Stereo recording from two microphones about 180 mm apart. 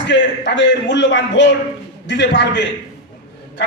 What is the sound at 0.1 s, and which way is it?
A man's voice, 80° left.